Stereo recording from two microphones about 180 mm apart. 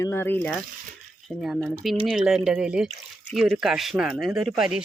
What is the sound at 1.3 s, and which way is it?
Speech, centre (ahead or behind).